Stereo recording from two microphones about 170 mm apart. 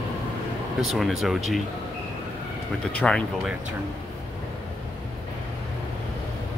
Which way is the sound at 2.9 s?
5° left (ahead or behind).